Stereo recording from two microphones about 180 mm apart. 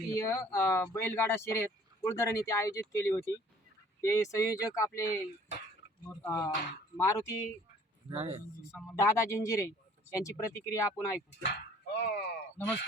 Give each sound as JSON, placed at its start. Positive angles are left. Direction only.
{"t": 0.1, "sound": "speech", "side_deg": 15}
{"t": 8.1, "sound": "speech", "side_deg": -30}
{"t": 8.7, "sound": "speech", "side_deg": 0}
{"t": 9.0, "sound": "speech", "side_deg": 15}
{"t": 11.4, "sound": "speech", "side_deg": 70}